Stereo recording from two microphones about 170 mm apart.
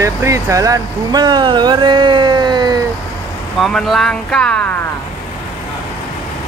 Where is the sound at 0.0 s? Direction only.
20° right (ahead or behind).